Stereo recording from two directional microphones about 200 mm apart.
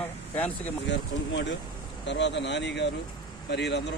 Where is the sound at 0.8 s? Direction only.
65° left (ahead or behind).